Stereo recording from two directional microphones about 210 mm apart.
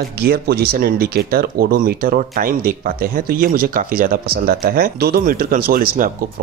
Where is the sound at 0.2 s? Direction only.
50° right (ahead or behind).